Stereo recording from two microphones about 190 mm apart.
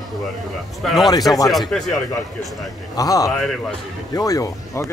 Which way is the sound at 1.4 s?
Centre (ahead or behind).